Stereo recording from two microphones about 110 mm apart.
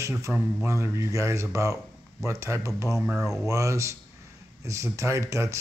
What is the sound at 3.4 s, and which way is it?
A man's voice, 30° right (ahead or behind).